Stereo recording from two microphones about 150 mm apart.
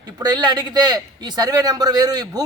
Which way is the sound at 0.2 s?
25° right (ahead or behind).